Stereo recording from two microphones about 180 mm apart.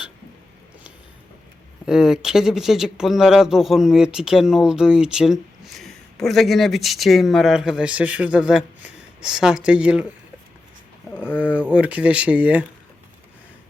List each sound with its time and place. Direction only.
1.9 s speech: 5° right (ahead or behind)
11.1 s speech: 10° left (ahead or behind)
11.3 s speech: 5° right (ahead or behind)